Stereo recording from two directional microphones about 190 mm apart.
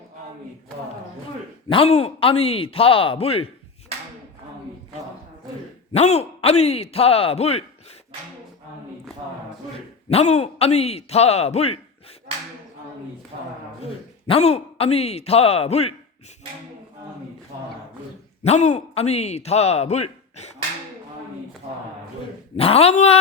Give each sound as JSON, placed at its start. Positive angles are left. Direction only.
{"t": 1.7, "sound": "speech", "side_deg": 30}
{"t": 5.9, "sound": "speech", "side_deg": 35}
{"t": 10.1, "sound": "speech", "side_deg": 35}
{"t": 14.3, "sound": "speech", "side_deg": 30}
{"t": 18.4, "sound": "speech", "side_deg": 35}
{"t": 22.5, "sound": "speech", "side_deg": 30}